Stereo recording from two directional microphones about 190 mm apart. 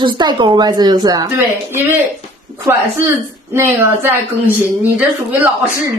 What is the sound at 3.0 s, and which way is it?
A woman's voice, 15° right (ahead or behind).